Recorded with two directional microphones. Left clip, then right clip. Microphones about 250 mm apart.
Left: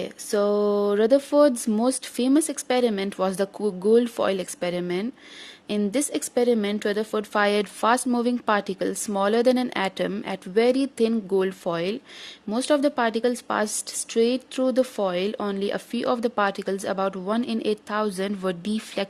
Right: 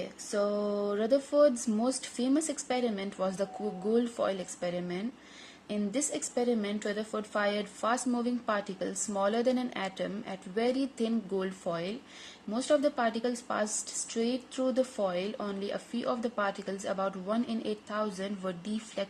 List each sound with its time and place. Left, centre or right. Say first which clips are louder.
0.0 s a woman's voice: left 8 dB; left